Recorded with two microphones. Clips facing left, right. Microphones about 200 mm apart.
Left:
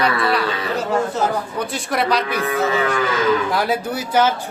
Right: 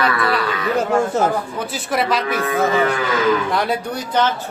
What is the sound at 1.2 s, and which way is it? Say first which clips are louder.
Speech: right 3 dB; 50° right (ahead or behind).